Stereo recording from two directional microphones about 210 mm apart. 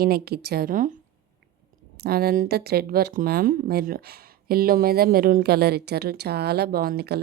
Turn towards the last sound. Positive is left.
turn(degrees=-50)  # may be behind; listen again after turning